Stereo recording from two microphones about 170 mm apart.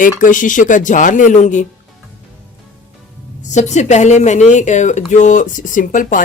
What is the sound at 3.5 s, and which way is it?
Speech, 45° left (ahead or behind).